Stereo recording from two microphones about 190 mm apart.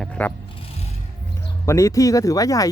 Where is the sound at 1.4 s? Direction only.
15° left (ahead or behind).